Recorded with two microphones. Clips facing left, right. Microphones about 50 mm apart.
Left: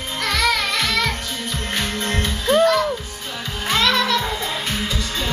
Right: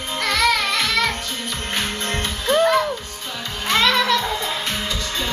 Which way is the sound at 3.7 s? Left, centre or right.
Centre.